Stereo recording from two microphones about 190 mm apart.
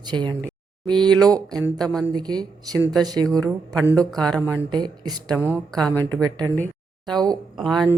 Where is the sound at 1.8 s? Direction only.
5° left (ahead or behind).